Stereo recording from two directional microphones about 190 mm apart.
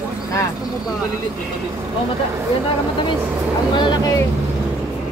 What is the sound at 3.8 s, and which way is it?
Speech, 20° left (ahead or behind).